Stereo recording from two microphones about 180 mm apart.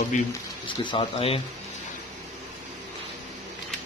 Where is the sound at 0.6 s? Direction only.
30° left (ahead or behind).